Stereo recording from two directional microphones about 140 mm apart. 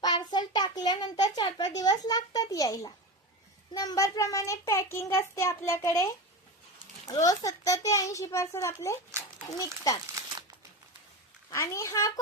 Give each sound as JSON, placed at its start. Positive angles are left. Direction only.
{"t": 0.0, "sound": "a child's voice", "side_deg": 30}
{"t": 7.1, "sound": "a child's voice", "side_deg": 25}
{"t": 11.5, "sound": "a child's voice", "side_deg": 20}